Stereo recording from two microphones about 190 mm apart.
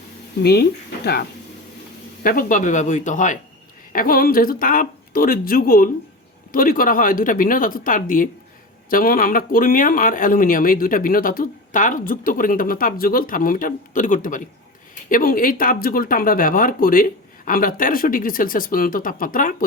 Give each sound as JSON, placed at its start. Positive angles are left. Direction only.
{"t": 0.4, "sound": "speech", "side_deg": 55}